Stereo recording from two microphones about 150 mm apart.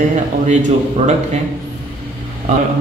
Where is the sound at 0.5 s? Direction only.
50° right (ahead or behind).